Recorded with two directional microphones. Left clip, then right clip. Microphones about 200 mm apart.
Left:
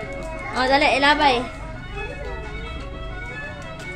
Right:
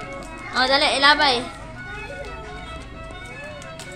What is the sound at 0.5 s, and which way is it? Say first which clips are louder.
Speech: left 1 dB; 15° left (ahead or behind).